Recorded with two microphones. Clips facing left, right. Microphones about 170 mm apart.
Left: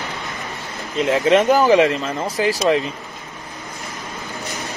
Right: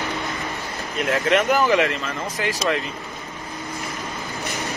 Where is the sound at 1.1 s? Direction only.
30° left (ahead or behind).